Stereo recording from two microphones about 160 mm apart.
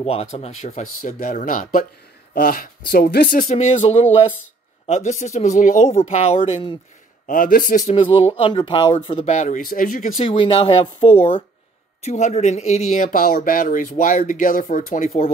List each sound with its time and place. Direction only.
0.0 s speech: 40° left (ahead or behind); by 3.3 s 70° left (ahead or behind)
3.3 s speech: 45° left (ahead or behind)
7.2 s a man's voice: 60° left (ahead or behind)
7.9 s speech: 30° left (ahead or behind)
9.2 s speech: 45° left (ahead or behind)
10.1 s speech: 35° left (ahead or behind)
12.0 s speech: 45° left (ahead or behind)